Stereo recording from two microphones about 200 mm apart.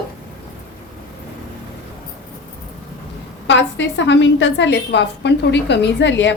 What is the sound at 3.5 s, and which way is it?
A woman's voice, 65° left (ahead or behind).